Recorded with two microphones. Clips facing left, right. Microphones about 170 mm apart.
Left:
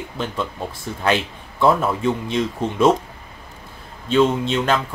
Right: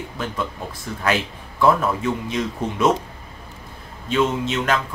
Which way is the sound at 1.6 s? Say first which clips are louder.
Left 1 dB; 25° left (ahead or behind).